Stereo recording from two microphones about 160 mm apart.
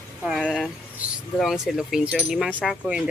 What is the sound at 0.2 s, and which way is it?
Speech, 5° right (ahead or behind).